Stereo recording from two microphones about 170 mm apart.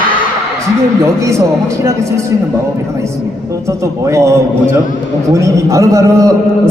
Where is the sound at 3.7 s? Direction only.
20° right (ahead or behind).